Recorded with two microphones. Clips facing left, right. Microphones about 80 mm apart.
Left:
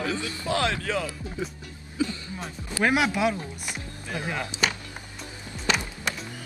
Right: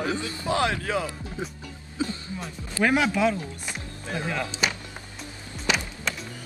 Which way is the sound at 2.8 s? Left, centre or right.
Centre.